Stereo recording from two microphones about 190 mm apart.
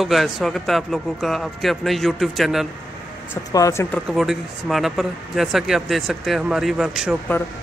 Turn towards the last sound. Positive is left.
turn(degrees=-5)  # may be behind; listen again after turning